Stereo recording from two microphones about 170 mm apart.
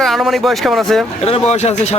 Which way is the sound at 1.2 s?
40° left (ahead or behind).